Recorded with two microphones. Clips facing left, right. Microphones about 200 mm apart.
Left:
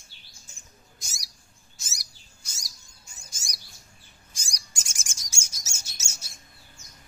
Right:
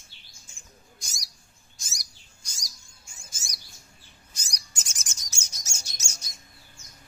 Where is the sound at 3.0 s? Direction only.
40° left (ahead or behind).